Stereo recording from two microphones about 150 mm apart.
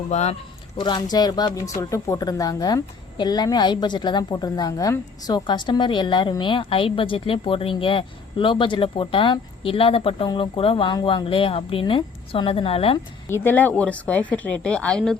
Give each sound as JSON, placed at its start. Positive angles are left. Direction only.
{"t": 0.1, "sound": "speech", "side_deg": 50}
{"t": 0.8, "sound": "speech", "side_deg": 30}
{"t": 13.3, "sound": "a woman's voice", "side_deg": 15}